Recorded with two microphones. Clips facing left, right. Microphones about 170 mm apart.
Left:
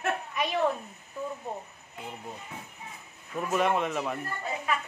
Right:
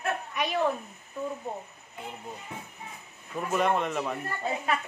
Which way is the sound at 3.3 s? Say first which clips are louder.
Even; centre (ahead or behind).